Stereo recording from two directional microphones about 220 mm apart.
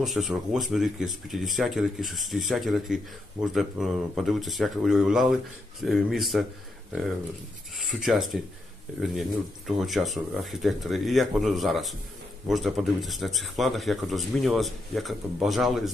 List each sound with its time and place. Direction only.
0.0 s speech: centre (ahead or behind)
7.7 s speech: centre (ahead or behind)
9.7 s speech: centre (ahead or behind)